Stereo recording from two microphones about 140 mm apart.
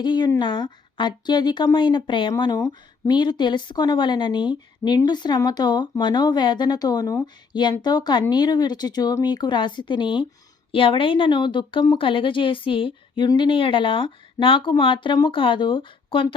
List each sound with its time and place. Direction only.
0.0 s speech: 30° left (ahead or behind)